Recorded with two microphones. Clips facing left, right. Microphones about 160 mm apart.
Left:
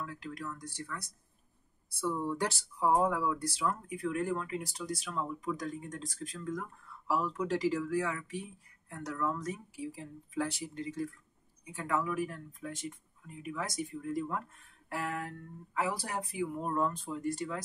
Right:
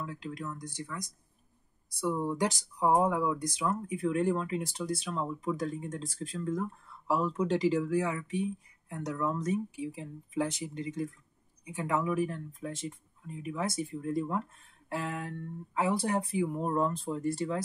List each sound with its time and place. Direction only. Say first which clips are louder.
0.0 s speech: right 2 dB; 20° right (ahead or behind)